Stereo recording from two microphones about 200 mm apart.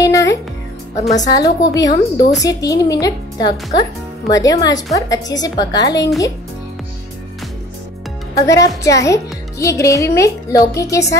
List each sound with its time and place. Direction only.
0.0 s music: 15° left (ahead or behind)
0.9 s a woman's voice: 35° left (ahead or behind)
1.8 s a woman's voice: 20° left (ahead or behind)
8.4 s a woman's voice: 15° left (ahead or behind)